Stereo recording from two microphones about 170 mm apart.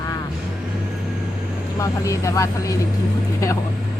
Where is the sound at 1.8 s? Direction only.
20° left (ahead or behind).